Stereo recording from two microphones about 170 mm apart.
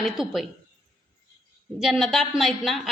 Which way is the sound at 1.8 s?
Centre (ahead or behind).